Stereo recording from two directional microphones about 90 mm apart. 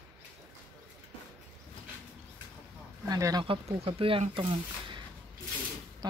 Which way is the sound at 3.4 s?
85° right.